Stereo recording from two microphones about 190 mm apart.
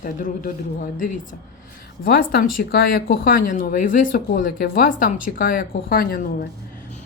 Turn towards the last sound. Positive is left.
turn(degrees=50)  # may be behind; listen again after turning